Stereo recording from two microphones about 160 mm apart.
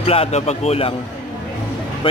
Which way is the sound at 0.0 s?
35° left (ahead or behind).